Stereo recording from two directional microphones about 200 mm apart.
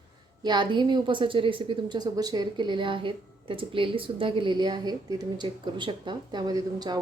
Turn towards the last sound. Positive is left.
turn(degrees=-20)  # may be behind; listen again after turning